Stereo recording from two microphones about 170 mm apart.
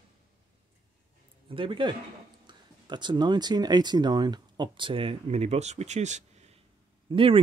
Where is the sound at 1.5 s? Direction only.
30° right (ahead or behind).